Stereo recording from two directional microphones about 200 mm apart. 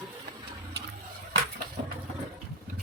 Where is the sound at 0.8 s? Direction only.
55° right (ahead or behind).